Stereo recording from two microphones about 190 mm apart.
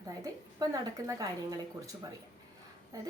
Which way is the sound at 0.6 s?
15° right (ahead or behind).